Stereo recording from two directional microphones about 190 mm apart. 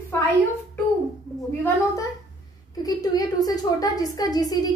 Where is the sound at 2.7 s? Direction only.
20° left (ahead or behind).